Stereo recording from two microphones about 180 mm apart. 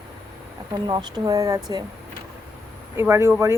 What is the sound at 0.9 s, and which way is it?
Speech, 25° right (ahead or behind).